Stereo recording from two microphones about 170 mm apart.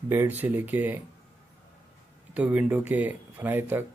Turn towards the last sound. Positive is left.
turn(degrees=-10)  # may be behind; listen again after turning